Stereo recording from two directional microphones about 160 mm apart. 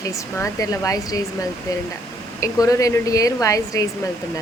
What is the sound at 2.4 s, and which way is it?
Speech, 20° left (ahead or behind).